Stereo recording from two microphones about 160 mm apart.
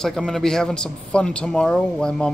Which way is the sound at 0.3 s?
5° left (ahead or behind).